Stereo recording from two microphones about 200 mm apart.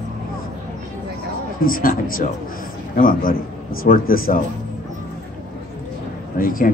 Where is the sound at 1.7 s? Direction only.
45° left (ahead or behind).